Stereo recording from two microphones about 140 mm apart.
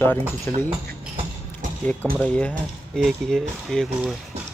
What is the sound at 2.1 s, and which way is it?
Speech, 10° left (ahead or behind).